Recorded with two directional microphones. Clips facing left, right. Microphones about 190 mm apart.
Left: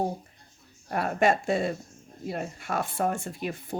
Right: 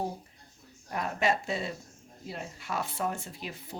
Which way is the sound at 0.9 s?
50° left (ahead or behind).